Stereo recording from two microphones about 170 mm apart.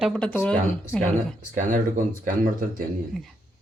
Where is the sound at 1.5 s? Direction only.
50° right (ahead or behind).